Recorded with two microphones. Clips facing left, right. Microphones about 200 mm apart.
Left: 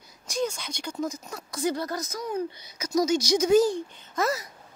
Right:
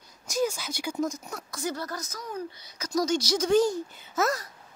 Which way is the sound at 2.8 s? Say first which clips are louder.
Left 2 dB; 10° left (ahead or behind).